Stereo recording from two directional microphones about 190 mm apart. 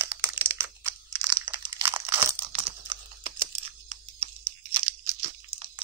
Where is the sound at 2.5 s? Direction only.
25° right (ahead or behind).